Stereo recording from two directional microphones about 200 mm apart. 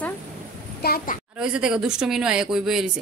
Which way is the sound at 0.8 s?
50° left (ahead or behind).